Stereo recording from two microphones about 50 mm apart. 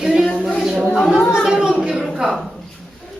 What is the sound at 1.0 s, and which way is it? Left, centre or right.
Speech, centre.